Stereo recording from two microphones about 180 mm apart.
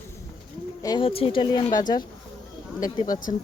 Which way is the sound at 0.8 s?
25° left (ahead or behind).